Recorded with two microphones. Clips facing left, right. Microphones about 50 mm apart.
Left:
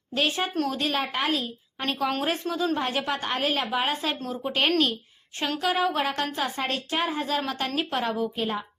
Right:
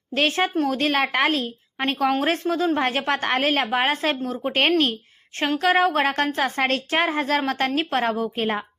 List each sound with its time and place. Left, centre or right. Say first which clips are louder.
0.1 s a woman's voice: right 5 dB; right